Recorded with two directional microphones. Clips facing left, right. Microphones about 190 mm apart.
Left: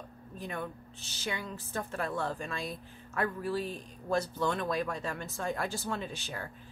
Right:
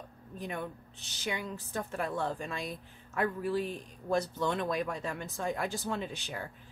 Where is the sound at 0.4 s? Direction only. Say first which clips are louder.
Even; 20° right (ahead or behind).